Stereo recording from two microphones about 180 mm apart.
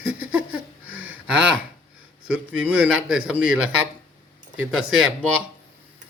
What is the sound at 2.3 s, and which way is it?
Speech, 5° right (ahead or behind).